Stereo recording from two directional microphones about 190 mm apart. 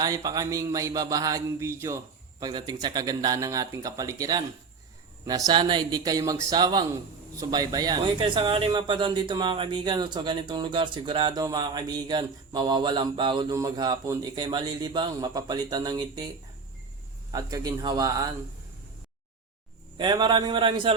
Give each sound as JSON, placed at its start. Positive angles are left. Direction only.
{"t": 0.0, "sound": "speech", "side_deg": -20}
{"t": 17.3, "sound": "speech", "side_deg": -20}
{"t": 20.0, "sound": "speech", "side_deg": -20}